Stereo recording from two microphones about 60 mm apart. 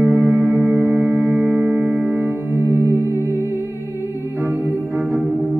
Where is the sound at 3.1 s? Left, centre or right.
Left.